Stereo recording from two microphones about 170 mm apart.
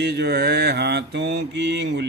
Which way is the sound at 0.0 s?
75° right (ahead or behind).